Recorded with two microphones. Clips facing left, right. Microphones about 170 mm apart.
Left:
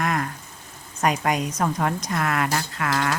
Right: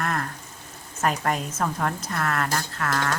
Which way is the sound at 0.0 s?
10° left (ahead or behind).